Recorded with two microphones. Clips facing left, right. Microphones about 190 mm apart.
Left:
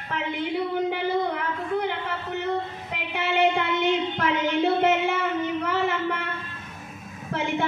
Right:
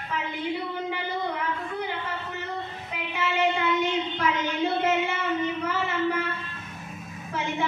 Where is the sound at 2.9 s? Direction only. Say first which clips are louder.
Left 3 dB; 65° left (ahead or behind).